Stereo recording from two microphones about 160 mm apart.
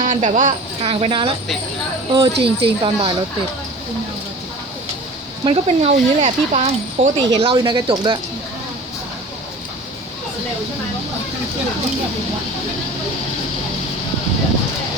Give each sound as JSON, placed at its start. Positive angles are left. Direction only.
{"t": 0.0, "sound": "speech", "side_deg": -50}
{"t": 0.9, "sound": "speech", "side_deg": -35}
{"t": 5.5, "sound": "speech", "side_deg": -40}
{"t": 7.2, "sound": "speech", "side_deg": -30}